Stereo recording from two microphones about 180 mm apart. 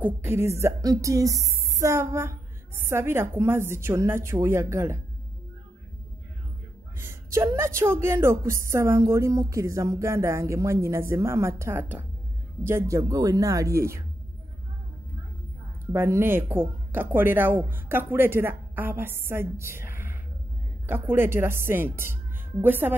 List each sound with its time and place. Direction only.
0.0 s speech: 15° right (ahead or behind)
7.0 s speech: 15° right (ahead or behind)
15.9 s speech: 15° right (ahead or behind)